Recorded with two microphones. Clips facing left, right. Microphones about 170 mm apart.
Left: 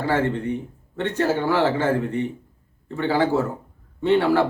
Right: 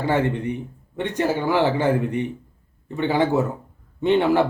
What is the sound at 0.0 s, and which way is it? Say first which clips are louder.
A man's voice: right 1 dB; 20° right (ahead or behind).